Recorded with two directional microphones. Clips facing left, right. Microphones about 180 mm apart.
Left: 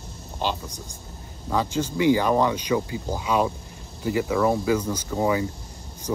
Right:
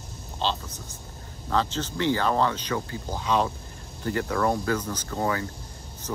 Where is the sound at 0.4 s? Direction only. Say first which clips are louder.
Left 1 dB; 15° left (ahead or behind).